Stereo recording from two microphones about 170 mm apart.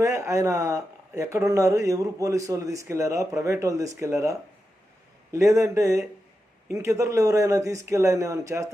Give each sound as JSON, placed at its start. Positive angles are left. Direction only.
{"t": 0.0, "sound": "speech", "side_deg": -15}